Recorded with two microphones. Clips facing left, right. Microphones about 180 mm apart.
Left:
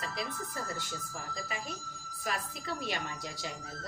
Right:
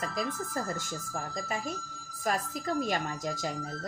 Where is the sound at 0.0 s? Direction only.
45° right (ahead or behind).